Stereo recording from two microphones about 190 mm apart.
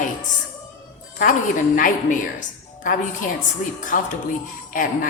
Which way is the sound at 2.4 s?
45° left (ahead or behind).